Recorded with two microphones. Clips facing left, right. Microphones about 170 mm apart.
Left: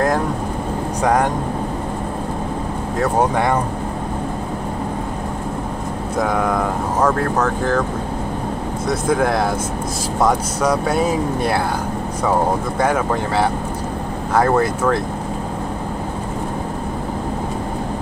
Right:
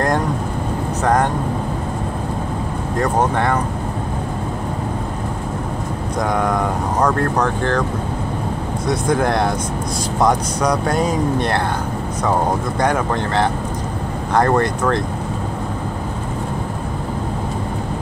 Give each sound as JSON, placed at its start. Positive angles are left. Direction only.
{"t": 1.0, "sound": "speech", "side_deg": 10}
{"t": 3.0, "sound": "speech", "side_deg": 10}
{"t": 6.1, "sound": "speech", "side_deg": 0}
{"t": 8.8, "sound": "speech", "side_deg": 0}